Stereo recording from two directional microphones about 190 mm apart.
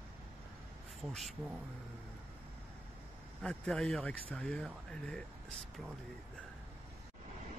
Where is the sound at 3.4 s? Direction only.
5° left (ahead or behind).